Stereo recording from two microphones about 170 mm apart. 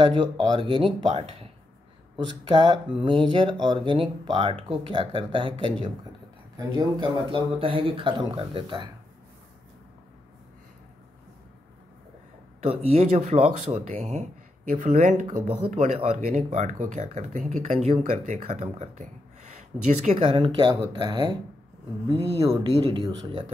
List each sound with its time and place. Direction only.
0.0 s speech: 25° right (ahead or behind)
6.5 s speech: 20° right (ahead or behind)
12.5 s speech: 40° right (ahead or behind)
20.3 s speech: 30° right (ahead or behind)